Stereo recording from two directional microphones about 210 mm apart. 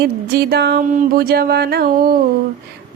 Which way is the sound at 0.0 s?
50° right (ahead or behind).